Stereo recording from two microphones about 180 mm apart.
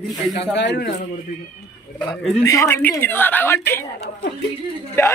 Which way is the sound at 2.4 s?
15° left (ahead or behind).